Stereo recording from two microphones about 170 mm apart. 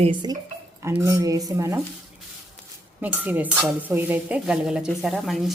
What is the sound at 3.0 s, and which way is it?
Speech, 10° right (ahead or behind).